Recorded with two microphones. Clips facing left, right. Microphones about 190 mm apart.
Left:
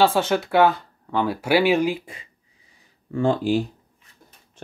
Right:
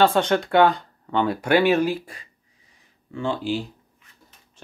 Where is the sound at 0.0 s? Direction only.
5° left (ahead or behind).